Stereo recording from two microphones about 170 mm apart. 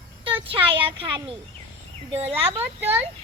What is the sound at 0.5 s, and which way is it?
A child's voice, 30° right (ahead or behind).